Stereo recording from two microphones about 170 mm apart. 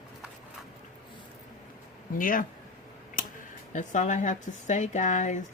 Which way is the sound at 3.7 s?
45° left (ahead or behind).